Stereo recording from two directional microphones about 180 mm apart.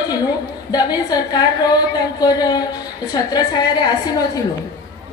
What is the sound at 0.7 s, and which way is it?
A woman's voice, 20° left (ahead or behind).